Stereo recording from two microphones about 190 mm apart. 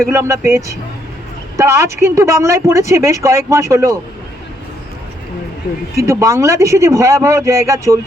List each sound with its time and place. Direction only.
0.1 s speech: 15° right (ahead or behind)
6.0 s speech: 15° right (ahead or behind)